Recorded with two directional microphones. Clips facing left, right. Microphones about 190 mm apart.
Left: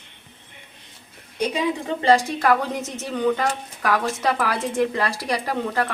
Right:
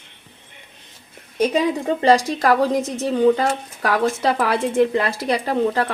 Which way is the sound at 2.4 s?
35° right (ahead or behind).